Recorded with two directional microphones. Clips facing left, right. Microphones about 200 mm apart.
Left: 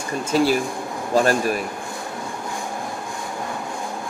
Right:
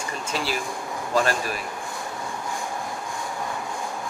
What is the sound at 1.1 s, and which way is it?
Speech, 45° left (ahead or behind).